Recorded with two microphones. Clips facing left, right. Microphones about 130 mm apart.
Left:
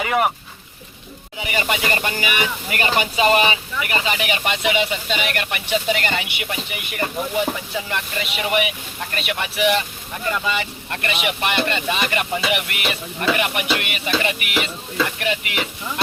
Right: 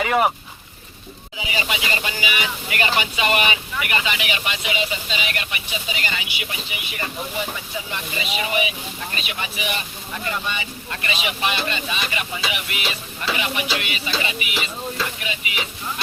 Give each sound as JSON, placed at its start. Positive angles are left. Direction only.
{"t": 0.0, "sound": "speech", "side_deg": 0}
{"t": 1.5, "sound": "speech", "side_deg": 50}
{"t": 4.5, "sound": "speech", "side_deg": 65}
{"t": 7.9, "sound": "speech", "side_deg": 65}
{"t": 10.4, "sound": "speech", "side_deg": 90}
{"t": 10.8, "sound": "speech", "side_deg": 60}